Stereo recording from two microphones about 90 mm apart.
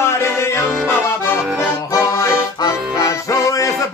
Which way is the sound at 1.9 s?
40° left (ahead or behind).